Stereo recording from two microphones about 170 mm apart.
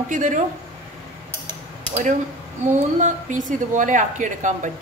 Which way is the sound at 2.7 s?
45° right (ahead or behind).